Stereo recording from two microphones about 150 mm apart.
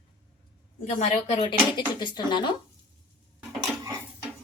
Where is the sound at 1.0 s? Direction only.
45° left (ahead or behind).